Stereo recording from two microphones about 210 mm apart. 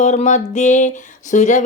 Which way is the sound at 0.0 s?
35° left (ahead or behind).